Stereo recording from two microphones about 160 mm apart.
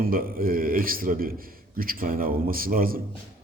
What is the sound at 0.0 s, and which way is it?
A man's voice, 65° right (ahead or behind).